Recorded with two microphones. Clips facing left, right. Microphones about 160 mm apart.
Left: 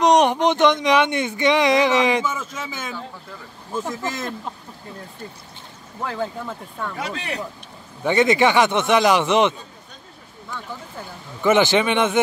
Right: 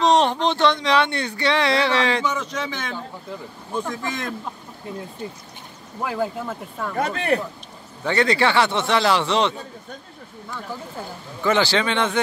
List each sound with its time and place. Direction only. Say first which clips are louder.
0.0 s speech: left 2 dB; 20° left (ahead or behind)
2.2 s speech: right 2 dB; 5° left (ahead or behind)
5.9 s speech: right 2 dB; 10° right (ahead or behind)
7.0 s speech: right 10 dB; 50° right (ahead or behind)
8.0 s speech: left 3 dB; 15° left (ahead or behind)
11.4 s speech: left 3 dB; 20° left (ahead or behind)